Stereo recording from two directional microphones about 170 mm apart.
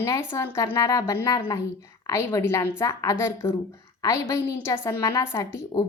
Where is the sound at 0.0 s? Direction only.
15° left (ahead or behind).